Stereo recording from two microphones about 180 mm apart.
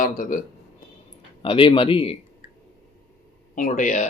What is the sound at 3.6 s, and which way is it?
Speech, 50° left (ahead or behind).